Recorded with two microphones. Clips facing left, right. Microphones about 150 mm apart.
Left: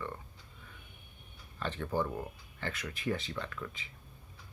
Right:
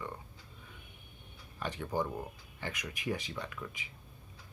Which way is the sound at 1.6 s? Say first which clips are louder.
Left 1 dB; 15° right (ahead or behind).